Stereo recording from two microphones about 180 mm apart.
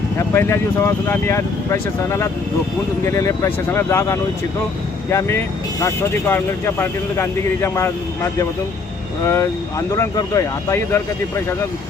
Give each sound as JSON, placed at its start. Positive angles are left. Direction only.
{"t": 0.2, "sound": "speech", "side_deg": 15}